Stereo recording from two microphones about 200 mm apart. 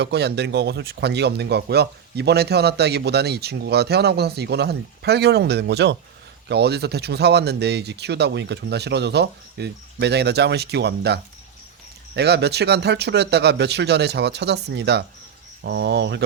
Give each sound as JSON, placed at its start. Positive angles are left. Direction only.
{"t": 0.0, "sound": "speech", "side_deg": -55}